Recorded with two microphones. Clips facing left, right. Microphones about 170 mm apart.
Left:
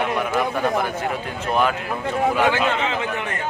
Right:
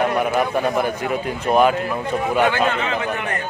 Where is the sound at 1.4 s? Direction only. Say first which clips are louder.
Right 5 dB; 15° right (ahead or behind).